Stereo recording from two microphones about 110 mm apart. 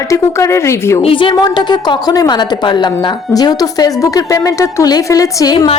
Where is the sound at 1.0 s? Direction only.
50° left (ahead or behind); by 5.5 s 30° left (ahead or behind).